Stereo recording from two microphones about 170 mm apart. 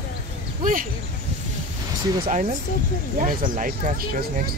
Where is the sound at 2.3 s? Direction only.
45° right (ahead or behind).